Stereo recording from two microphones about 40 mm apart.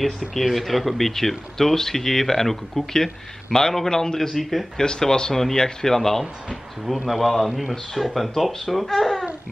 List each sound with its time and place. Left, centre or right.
0.2 s speech: centre
4.3 s speech: centre
4.8 s speech: centre